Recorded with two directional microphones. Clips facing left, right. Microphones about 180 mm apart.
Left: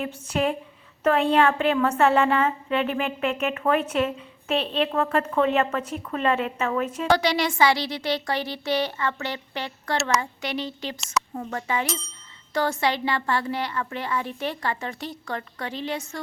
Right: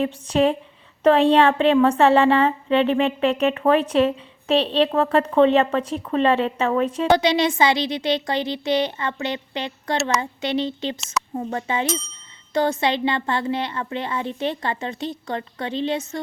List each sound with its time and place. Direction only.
0.0 s a woman's voice: 30° right (ahead or behind)